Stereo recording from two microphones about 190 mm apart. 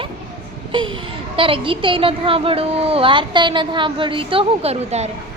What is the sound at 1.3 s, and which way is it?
A woman's voice, 30° right (ahead or behind).